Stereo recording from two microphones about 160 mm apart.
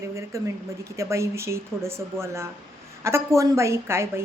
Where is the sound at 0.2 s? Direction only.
20° right (ahead or behind).